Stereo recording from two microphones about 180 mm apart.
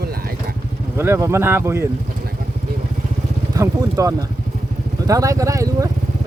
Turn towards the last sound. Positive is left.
turn(degrees=-20)  # may be behind; listen again after turning